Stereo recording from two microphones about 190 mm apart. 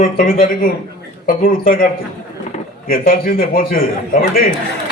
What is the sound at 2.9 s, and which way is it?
A man's voice, 50° left (ahead or behind).